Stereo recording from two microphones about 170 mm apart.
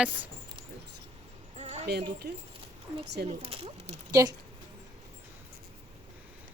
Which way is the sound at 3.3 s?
35° right (ahead or behind).